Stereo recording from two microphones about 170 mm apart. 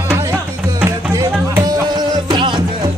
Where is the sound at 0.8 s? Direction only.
15° right (ahead or behind).